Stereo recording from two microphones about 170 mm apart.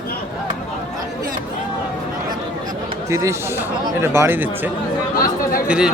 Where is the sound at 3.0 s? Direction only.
15° right (ahead or behind).